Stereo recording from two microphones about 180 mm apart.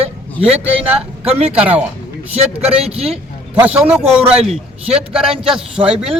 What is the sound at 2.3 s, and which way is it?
Speech, 35° right (ahead or behind).